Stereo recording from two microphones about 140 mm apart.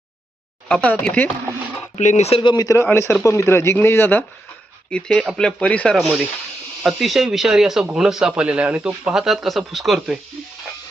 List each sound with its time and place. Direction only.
0.7 s speech: 5° left (ahead or behind)
2.0 s speech: 55° left (ahead or behind)
2.4 s speech: 30° left (ahead or behind); by 10.2 s centre (ahead or behind)